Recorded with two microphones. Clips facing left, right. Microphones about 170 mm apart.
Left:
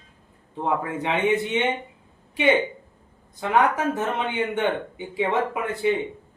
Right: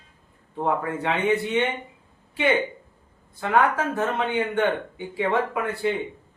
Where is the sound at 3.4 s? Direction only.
15° left (ahead or behind).